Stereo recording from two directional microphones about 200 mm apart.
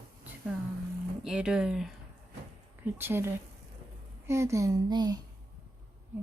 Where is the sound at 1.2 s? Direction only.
5° right (ahead or behind).